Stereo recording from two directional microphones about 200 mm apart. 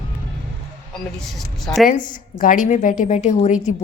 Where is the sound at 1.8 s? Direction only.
40° left (ahead or behind).